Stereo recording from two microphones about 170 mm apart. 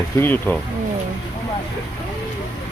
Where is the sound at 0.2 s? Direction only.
10° left (ahead or behind).